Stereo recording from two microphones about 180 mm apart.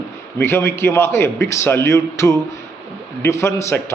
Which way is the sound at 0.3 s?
15° left (ahead or behind).